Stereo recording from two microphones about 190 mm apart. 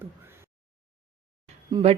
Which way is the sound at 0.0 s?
10° right (ahead or behind).